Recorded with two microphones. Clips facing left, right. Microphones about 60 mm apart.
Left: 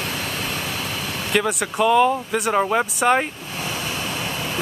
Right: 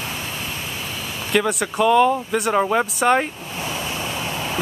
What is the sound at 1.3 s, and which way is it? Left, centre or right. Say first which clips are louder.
Speech: right 2 dB; centre.